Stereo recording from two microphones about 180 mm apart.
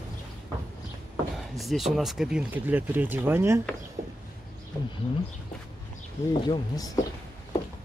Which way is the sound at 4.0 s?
55° right (ahead or behind).